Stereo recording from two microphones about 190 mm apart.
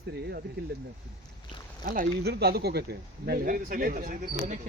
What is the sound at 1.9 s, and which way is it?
Speech, 50° right (ahead or behind).